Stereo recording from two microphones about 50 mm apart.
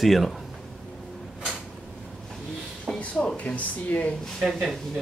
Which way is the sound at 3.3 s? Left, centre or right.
Left.